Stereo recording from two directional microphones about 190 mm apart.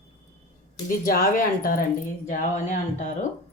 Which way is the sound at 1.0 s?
45° left (ahead or behind).